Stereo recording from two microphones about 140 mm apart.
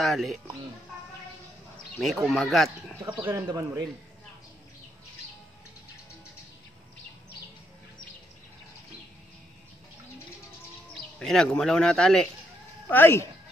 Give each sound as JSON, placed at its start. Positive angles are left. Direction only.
{"t": 0.0, "sound": "a man's voice", "side_deg": 0}
{"t": 2.0, "sound": "a man's voice", "side_deg": 0}
{"t": 3.0, "sound": "speech", "side_deg": -15}
{"t": 3.4, "sound": "speech", "side_deg": -30}
{"t": 11.1, "sound": "a man's voice", "side_deg": 5}